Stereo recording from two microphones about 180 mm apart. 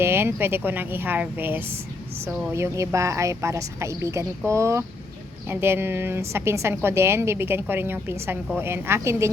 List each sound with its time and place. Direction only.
0.0 s a woman's voice: 15° right (ahead or behind)